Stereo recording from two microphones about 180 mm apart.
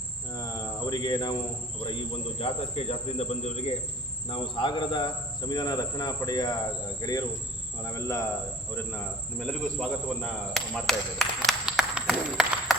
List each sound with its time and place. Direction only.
0.3 s cricket: 20° left (ahead or behind)
2.4 s cricket: 35° left (ahead or behind); by 8.3 s 15° left (ahead or behind)
9.4 s a sound: 5° left (ahead or behind)